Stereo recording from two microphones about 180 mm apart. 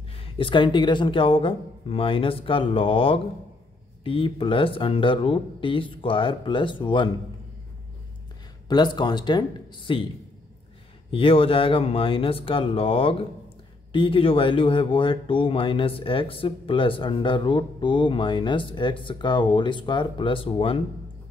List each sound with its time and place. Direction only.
0.1 s speech: 30° left (ahead or behind)
8.6 s speech: 25° left (ahead or behind)
11.1 s speech: 30° left (ahead or behind)